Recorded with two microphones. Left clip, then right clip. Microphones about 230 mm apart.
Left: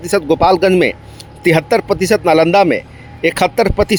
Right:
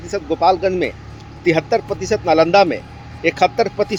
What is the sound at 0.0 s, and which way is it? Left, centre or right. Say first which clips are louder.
A man's voice: left 4 dB; left.